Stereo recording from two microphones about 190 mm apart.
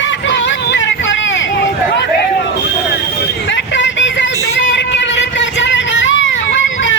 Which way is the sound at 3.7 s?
70° left (ahead or behind).